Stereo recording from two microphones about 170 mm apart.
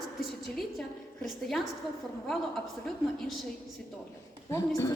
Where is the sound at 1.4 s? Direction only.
Centre (ahead or behind).